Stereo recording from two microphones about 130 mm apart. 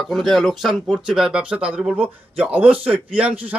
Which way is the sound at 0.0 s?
Centre (ahead or behind).